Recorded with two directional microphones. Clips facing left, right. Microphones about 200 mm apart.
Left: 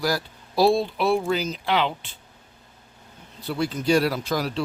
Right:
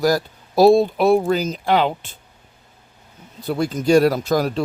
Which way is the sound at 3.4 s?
45° right (ahead or behind).